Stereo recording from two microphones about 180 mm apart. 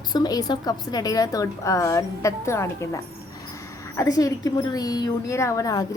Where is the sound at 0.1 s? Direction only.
20° left (ahead or behind).